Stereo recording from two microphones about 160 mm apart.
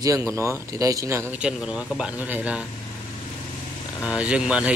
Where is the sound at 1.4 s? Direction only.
5° right (ahead or behind).